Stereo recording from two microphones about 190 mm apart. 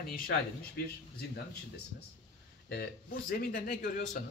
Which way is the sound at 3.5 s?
50° left (ahead or behind).